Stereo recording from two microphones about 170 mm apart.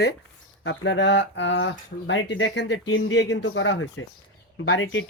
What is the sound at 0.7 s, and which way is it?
Speech, 90° left.